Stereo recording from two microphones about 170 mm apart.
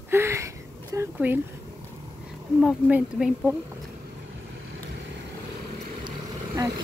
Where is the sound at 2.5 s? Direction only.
5° right (ahead or behind).